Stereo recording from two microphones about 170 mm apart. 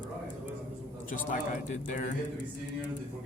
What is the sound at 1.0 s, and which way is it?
Speech, 50° left (ahead or behind).